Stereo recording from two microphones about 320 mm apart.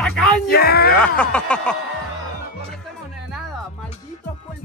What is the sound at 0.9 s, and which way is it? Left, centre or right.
Music, centre.